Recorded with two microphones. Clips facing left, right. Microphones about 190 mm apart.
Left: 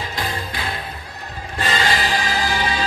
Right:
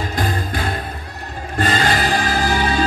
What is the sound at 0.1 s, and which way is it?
Music, 50° right (ahead or behind).